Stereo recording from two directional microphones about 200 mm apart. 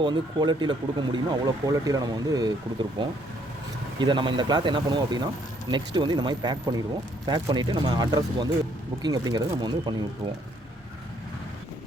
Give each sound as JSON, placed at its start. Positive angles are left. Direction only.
{"t": 0.0, "sound": "speech", "side_deg": -20}